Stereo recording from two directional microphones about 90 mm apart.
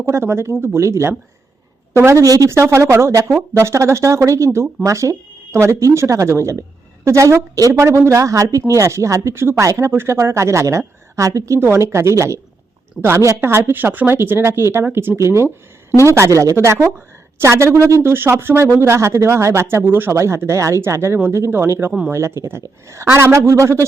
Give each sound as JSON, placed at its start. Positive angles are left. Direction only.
{"t": 0.0, "sound": "a woman's voice", "side_deg": -30}
{"t": 15.4, "sound": "speech", "side_deg": 25}
{"t": 16.0, "sound": "speech", "side_deg": -35}